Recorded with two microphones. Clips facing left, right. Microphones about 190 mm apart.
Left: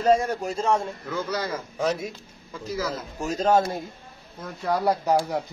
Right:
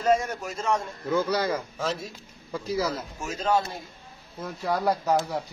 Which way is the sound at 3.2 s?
40° left (ahead or behind).